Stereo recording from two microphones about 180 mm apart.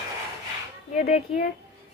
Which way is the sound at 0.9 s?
40° left (ahead or behind).